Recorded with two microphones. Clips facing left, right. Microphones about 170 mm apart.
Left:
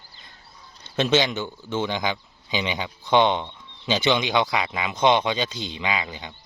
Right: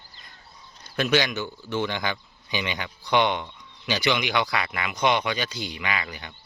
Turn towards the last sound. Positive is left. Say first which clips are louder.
# left 3 dB
turn(degrees=20)  # may be behind; listen again after turning